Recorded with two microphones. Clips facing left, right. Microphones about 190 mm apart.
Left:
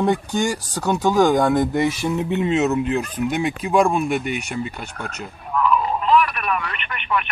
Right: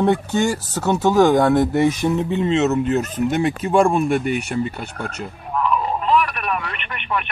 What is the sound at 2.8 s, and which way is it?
Speech, 45° right (ahead or behind).